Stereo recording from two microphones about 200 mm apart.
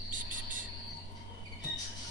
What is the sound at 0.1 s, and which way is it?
Cricket, 40° right (ahead or behind).